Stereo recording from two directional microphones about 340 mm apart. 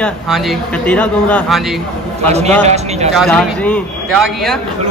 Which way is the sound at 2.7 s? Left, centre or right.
Centre.